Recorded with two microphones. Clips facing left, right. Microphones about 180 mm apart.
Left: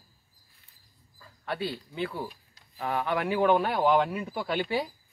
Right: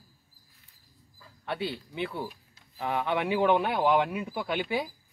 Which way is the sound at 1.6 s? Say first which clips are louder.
Left 1 dB; 20° right (ahead or behind).